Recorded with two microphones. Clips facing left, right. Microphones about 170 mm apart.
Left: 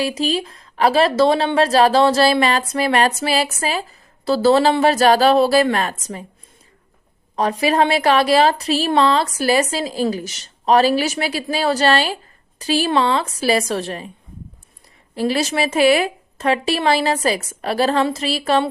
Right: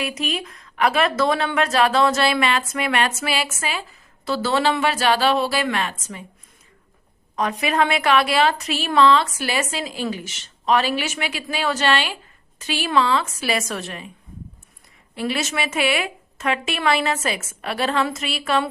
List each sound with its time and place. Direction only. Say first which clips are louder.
0.0 s a woman's voice: left 6 dB; 30° left (ahead or behind)
7.3 s a woman's voice: left 4 dB; 35° left (ahead or behind)
15.1 s a woman's voice: left 5 dB; 35° left (ahead or behind)